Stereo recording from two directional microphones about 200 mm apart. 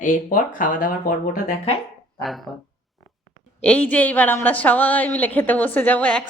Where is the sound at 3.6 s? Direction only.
5° left (ahead or behind).